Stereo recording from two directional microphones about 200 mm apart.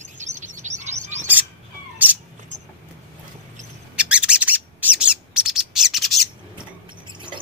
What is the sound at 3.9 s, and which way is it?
Bird, 5° right (ahead or behind).